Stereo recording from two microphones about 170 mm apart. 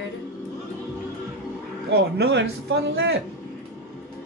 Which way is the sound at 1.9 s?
75° right (ahead or behind).